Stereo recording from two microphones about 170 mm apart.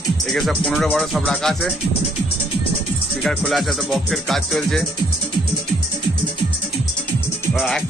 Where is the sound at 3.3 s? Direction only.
Centre (ahead or behind).